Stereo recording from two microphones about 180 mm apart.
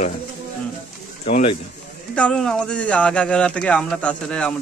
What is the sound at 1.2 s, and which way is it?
Speech, 40° left (ahead or behind).